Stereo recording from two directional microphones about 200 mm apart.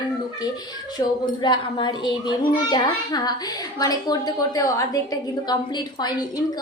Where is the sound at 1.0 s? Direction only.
20° left (ahead or behind).